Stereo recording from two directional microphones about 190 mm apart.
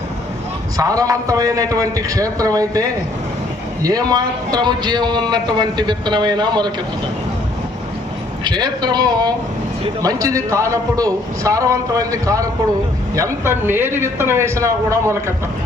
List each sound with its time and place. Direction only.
0.8 s a man's voice: 20° right (ahead or behind)
8.4 s a man's voice: 20° right (ahead or behind)